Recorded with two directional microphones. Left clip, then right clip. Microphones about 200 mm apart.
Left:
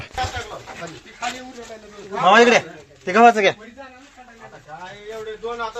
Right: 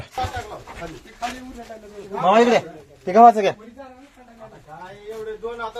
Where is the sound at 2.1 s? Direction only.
5° left (ahead or behind).